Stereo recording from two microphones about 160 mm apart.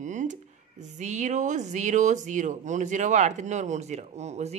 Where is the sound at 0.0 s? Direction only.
50° right (ahead or behind).